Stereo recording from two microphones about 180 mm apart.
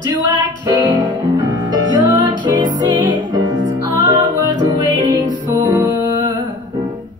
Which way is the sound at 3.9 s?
25° right (ahead or behind).